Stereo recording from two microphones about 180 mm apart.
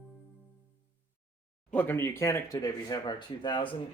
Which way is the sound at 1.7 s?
10° left (ahead or behind).